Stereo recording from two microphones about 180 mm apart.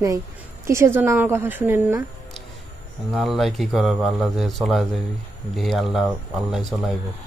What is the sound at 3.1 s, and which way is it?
Speech, centre (ahead or behind).